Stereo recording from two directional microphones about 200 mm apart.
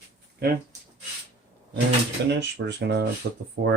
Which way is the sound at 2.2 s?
60° right (ahead or behind).